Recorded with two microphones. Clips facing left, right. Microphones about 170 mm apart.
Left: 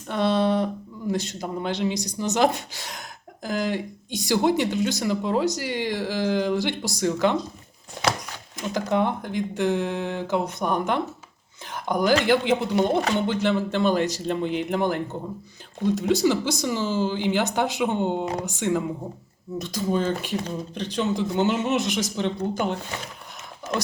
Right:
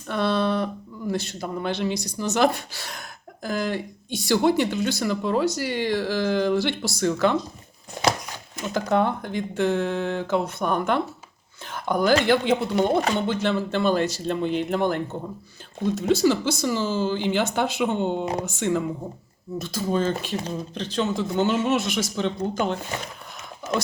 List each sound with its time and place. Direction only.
0.1 s speech: 15° left (ahead or behind)
8.7 s speech: 15° left (ahead or behind)
11.7 s a sound: 15° left (ahead or behind)
12.2 s speech: 15° left (ahead or behind)
16.0 s speech: 15° left (ahead or behind)